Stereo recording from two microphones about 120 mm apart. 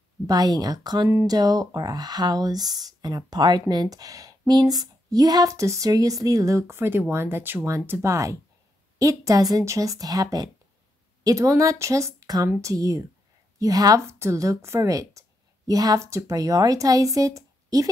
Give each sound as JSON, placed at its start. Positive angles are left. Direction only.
{"t": 0.3, "sound": "a woman's voice", "side_deg": -35}